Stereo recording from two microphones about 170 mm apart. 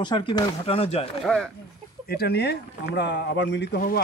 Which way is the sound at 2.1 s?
70° left (ahead or behind).